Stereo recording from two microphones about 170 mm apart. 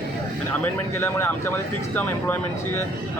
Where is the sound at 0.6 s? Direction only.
15° left (ahead or behind).